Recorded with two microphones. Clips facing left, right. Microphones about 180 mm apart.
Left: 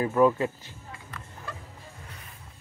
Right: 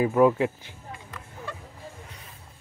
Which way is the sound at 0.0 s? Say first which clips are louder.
Right 2 dB; 10° right (ahead or behind).